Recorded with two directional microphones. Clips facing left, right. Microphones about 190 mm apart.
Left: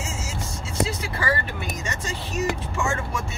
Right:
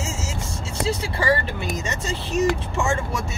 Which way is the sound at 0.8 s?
30° right (ahead or behind).